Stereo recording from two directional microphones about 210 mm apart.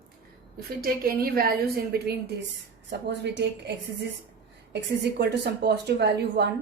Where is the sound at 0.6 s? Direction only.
45° right (ahead or behind).